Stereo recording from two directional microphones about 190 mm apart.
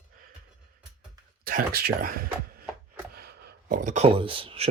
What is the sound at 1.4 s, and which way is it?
Speech, 50° right (ahead or behind).